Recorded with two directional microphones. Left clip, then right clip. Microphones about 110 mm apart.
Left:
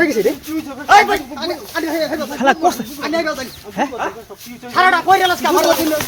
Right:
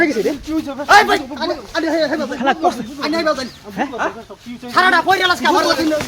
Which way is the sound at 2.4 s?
90° left.